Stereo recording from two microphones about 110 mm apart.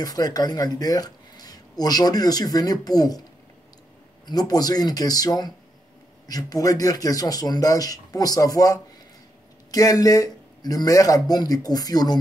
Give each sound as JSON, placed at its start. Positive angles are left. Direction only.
{"t": 0.0, "sound": "speech", "side_deg": 35}
{"t": 4.3, "sound": "speech", "side_deg": 35}